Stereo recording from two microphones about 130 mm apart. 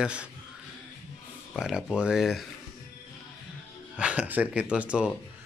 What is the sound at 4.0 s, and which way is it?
Speech, 10° right (ahead or behind).